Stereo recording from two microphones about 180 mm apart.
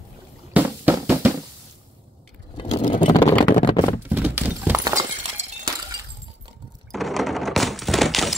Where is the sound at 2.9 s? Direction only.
25° left (ahead or behind).